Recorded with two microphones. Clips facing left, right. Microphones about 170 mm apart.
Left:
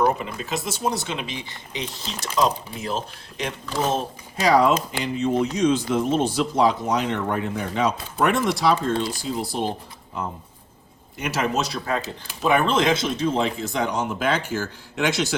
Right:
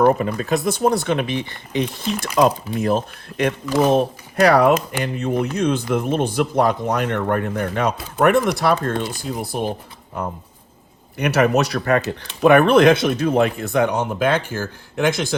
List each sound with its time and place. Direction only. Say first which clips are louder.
0.0 s speech: right 6 dB; 50° right (ahead or behind)
3.7 s speech: right 7 dB; 10° right (ahead or behind)
3.9 s speech: right 9 dB; 60° right (ahead or behind)
11.2 s speech: right 7 dB; 65° right (ahead or behind)